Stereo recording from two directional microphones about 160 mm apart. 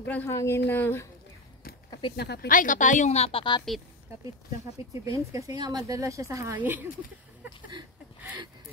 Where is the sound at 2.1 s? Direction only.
90° left; by 3.6 s 30° left (ahead or behind).